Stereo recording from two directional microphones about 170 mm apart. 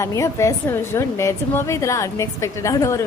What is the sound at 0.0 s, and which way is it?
A woman's voice, 20° left (ahead or behind).